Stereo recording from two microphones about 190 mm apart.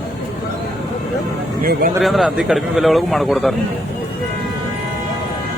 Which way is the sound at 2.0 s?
Centre (ahead or behind).